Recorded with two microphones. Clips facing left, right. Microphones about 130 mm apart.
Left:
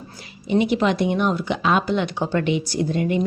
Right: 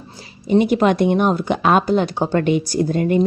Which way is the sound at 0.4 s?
45° right (ahead or behind).